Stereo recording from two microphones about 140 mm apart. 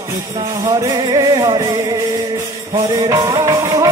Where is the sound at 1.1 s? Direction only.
30° right (ahead or behind).